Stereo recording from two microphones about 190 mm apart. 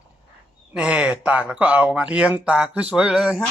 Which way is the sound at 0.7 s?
5° right (ahead or behind).